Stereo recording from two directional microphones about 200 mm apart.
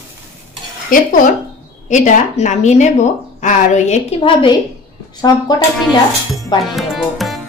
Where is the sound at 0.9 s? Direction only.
45° left (ahead or behind); by 5.4 s 20° left (ahead or behind).